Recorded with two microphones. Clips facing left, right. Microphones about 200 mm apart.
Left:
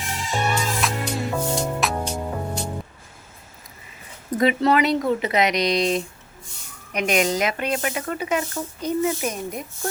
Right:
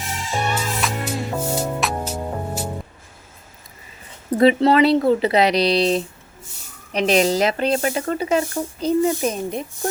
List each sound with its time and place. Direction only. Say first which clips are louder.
0.3 s music: even; centre (ahead or behind)
4.3 s speech: right 4 dB; 30° right (ahead or behind)